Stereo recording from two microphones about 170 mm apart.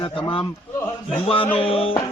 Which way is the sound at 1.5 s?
35° left (ahead or behind).